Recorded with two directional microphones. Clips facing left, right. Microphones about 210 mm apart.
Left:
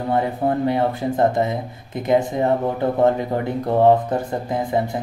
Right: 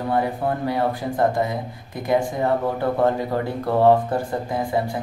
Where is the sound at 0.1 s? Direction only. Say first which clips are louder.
Left 3 dB; 20° left (ahead or behind).